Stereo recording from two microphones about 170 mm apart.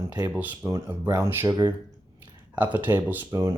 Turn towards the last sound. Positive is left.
turn(degrees=-15)  # may be behind; listen again after turning